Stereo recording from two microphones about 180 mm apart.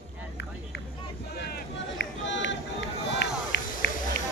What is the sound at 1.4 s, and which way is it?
Run, 65° left (ahead or behind).